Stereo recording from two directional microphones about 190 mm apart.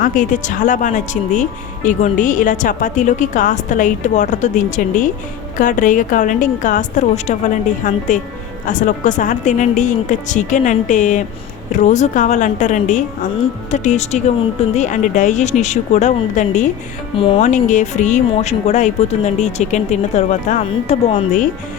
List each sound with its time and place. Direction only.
0.0 s speech: 45° left (ahead or behind)
17.2 s speech: 25° left (ahead or behind)
17.5 s speech: 40° left (ahead or behind)